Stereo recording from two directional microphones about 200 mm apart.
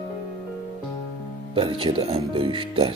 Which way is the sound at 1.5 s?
25° right (ahead or behind).